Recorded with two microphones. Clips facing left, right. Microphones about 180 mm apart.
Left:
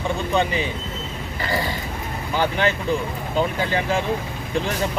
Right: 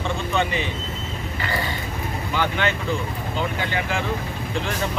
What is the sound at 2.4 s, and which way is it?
Speech, 35° left (ahead or behind).